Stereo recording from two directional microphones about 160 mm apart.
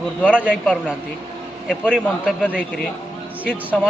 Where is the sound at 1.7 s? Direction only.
5° left (ahead or behind).